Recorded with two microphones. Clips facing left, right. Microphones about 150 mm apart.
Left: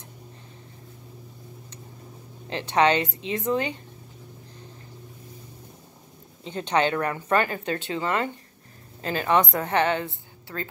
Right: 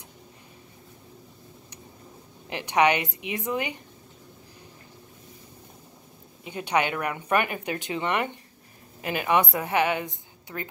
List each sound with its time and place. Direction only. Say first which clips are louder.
2.5 s speech: left 1 dB; 15° right (ahead or behind)
6.4 s speech: left 2 dB; 10° right (ahead or behind)